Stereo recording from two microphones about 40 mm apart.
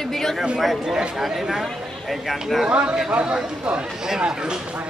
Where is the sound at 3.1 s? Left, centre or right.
Right.